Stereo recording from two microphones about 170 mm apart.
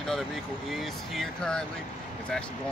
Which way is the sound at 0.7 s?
Centre (ahead or behind).